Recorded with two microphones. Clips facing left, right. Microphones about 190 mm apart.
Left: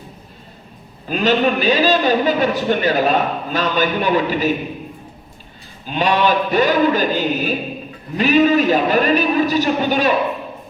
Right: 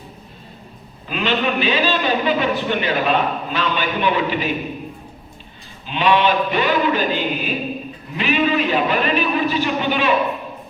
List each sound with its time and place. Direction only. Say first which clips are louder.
1.0 s a man's voice: left 5 dB; 40° left (ahead or behind)
5.8 s a man's voice: even; 40° left (ahead or behind)